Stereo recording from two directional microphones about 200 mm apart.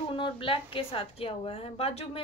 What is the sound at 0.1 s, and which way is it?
A woman's voice, 25° left (ahead or behind).